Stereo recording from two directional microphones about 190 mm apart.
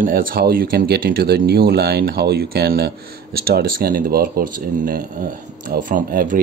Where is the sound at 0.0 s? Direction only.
50° right (ahead or behind).